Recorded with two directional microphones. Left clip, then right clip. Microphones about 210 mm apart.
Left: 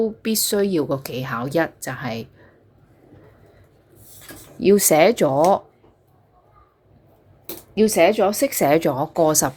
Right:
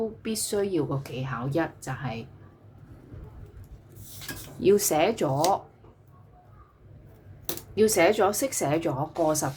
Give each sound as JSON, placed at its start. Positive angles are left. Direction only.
{"t": 0.0, "sound": "speech", "side_deg": 35}
{"t": 4.6, "sound": "a woman's voice", "side_deg": 25}
{"t": 7.8, "sound": "a woman's voice", "side_deg": 25}